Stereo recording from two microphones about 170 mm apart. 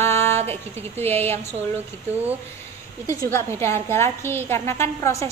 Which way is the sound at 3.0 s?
15° left (ahead or behind).